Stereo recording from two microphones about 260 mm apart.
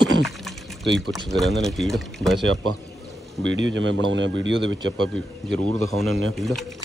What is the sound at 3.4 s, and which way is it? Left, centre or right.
Speech, right.